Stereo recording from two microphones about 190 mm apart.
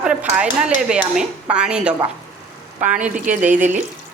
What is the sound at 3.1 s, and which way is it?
Speech, 40° right (ahead or behind).